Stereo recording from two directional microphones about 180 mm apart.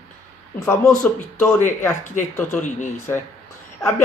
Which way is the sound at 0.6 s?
10° left (ahead or behind).